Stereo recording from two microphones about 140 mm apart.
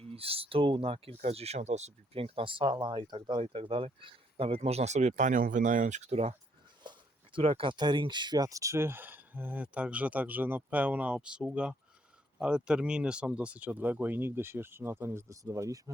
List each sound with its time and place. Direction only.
0.0 s speech: 45° right (ahead or behind)
3.4 s speech: 45° right (ahead or behind)
6.8 s a sound: 35° right (ahead or behind)
7.3 s speech: 40° right (ahead or behind); by 15.8 s 25° right (ahead or behind)